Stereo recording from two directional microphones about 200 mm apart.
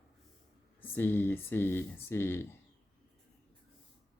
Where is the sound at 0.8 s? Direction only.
10° left (ahead or behind).